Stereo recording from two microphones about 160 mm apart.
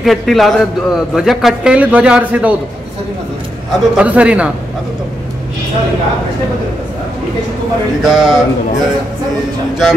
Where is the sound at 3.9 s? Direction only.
5° right (ahead or behind).